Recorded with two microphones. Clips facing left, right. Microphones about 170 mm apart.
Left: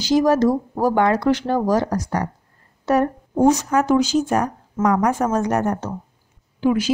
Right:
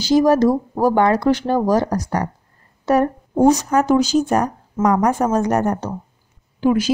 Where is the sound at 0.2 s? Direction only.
30° right (ahead or behind).